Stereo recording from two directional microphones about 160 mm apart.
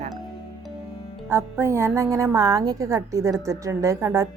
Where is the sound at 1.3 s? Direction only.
15° right (ahead or behind).